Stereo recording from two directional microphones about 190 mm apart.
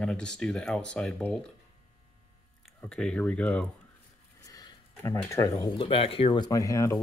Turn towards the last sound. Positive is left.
turn(degrees=15)  # may be behind; listen again after turning